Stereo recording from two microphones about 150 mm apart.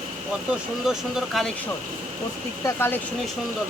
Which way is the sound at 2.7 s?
15° left (ahead or behind).